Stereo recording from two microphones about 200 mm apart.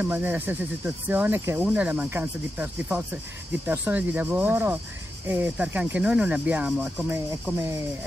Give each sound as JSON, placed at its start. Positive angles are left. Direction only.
{"t": 0.0, "sound": "speech", "side_deg": -10}